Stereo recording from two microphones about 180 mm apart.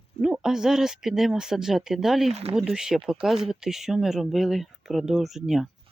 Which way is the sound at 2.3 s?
35° right (ahead or behind).